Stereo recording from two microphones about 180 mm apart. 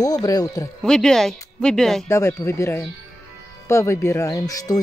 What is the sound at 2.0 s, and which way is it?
Speech, 15° left (ahead or behind).